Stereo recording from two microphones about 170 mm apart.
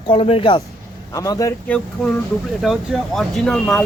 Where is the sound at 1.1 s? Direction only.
20° left (ahead or behind).